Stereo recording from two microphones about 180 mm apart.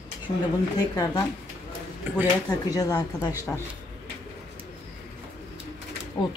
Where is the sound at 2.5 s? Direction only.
20° left (ahead or behind).